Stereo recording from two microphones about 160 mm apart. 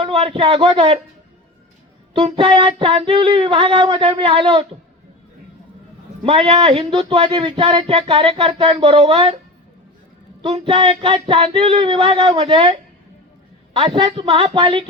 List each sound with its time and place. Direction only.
0.0 s speech: 35° right (ahead or behind)
2.1 s speech: 35° right (ahead or behind)
6.2 s speech: 35° right (ahead or behind)
10.4 s speech: 35° right (ahead or behind)
13.7 s speech: 35° right (ahead or behind)